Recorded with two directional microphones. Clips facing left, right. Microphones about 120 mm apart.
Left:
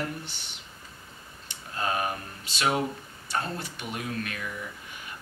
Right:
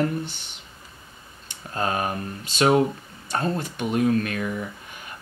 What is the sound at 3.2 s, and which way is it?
Speech, 45° right (ahead or behind).